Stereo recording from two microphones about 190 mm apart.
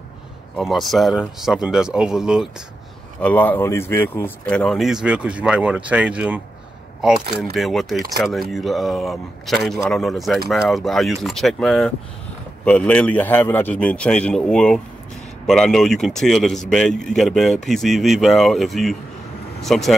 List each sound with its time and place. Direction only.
0.6 s speech: centre (ahead or behind)
3.2 s a man's voice: 10° left (ahead or behind)